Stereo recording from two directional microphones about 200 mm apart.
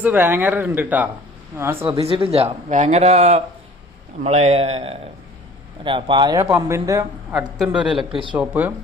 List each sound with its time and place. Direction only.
0.0 s speech: 10° right (ahead or behind)
2.0 s speech: 30° right (ahead or behind)
7.4 s a man's voice: 5° right (ahead or behind)
8.1 s speech: 25° right (ahead or behind)
8.4 s speech: 10° right (ahead or behind)